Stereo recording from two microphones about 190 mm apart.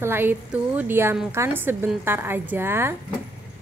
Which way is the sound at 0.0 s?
10° right (ahead or behind).